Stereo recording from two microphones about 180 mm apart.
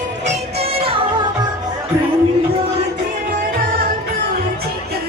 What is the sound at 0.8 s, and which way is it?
Music, 30° right (ahead or behind).